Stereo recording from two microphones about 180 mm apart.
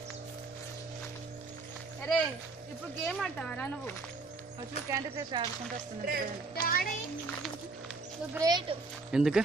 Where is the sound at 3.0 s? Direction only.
5° left (ahead or behind).